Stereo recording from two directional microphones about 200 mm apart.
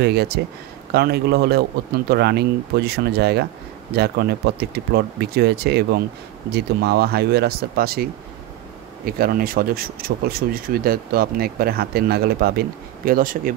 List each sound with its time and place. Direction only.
0.0 s speech: 55° right (ahead or behind)